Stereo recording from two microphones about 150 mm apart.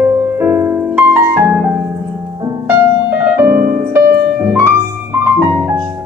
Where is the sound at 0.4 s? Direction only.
15° right (ahead or behind).